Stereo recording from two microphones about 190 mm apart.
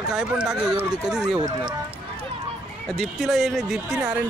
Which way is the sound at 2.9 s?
Centre (ahead or behind).